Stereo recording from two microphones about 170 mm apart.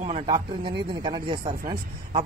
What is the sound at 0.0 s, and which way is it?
A man's voice, 30° right (ahead or behind).